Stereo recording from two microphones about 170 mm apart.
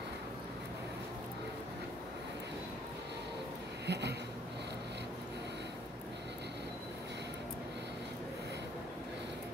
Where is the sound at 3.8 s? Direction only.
80° right.